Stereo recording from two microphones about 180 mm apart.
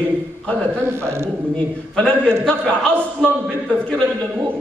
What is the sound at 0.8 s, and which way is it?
Speech, 15° right (ahead or behind).